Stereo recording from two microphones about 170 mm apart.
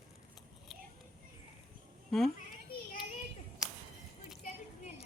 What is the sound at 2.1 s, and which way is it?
Speech, centre (ahead or behind).